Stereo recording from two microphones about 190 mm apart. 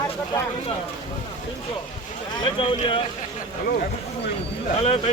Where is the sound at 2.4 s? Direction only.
25° left (ahead or behind).